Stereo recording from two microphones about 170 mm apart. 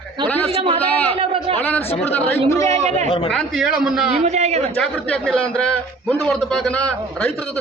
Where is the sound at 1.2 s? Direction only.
35° right (ahead or behind).